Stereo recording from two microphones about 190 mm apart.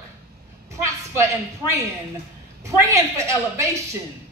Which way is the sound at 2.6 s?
15° right (ahead or behind).